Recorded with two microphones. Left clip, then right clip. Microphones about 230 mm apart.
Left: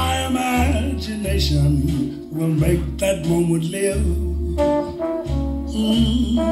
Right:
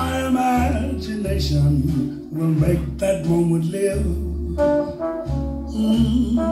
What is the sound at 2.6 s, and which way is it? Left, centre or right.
Speech, left.